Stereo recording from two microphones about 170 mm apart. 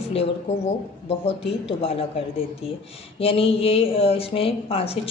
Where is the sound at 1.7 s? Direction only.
35° left (ahead or behind).